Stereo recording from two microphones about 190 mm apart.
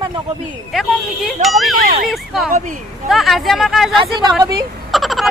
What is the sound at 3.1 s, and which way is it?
Speech, centre (ahead or behind).